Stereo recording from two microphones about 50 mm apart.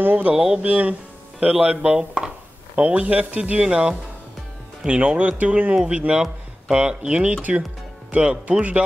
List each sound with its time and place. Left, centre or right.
0.0 s speech: right
0.3 s speech: centre
0.7 s speech: right
5.8 s speech: centre